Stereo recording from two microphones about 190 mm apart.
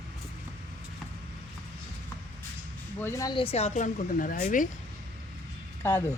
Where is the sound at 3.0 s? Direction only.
15° left (ahead or behind); by 4.6 s 45° left (ahead or behind).